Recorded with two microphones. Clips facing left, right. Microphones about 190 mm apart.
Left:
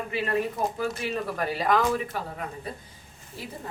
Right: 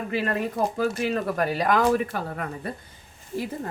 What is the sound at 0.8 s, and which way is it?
Speech, 50° right (ahead or behind).